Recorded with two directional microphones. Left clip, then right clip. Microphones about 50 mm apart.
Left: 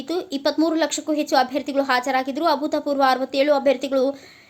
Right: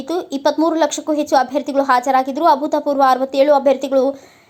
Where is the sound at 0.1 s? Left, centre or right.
Right.